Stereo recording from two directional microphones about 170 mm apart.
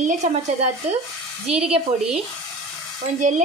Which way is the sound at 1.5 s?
5° right (ahead or behind).